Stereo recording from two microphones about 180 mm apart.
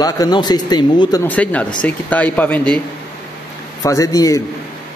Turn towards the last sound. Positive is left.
turn(degrees=20)  # may be behind; listen again after turning